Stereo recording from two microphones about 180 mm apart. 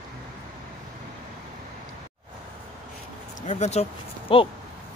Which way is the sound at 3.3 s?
40° left (ahead or behind).